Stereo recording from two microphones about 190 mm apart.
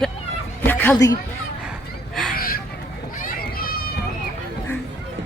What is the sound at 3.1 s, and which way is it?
Run, 50° left (ahead or behind).